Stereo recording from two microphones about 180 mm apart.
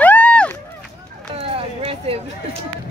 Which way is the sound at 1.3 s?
30° right (ahead or behind).